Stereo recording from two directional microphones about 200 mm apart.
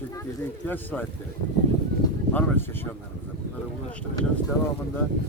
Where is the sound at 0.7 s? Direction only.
10° left (ahead or behind).